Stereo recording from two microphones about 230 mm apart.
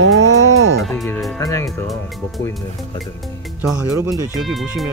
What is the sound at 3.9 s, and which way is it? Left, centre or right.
Speech, centre.